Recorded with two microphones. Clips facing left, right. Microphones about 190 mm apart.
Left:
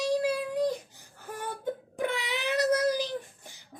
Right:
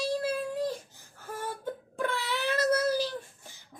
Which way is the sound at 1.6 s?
15° left (ahead or behind).